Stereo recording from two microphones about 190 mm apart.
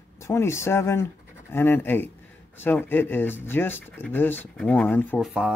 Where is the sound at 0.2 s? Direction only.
15° left (ahead or behind).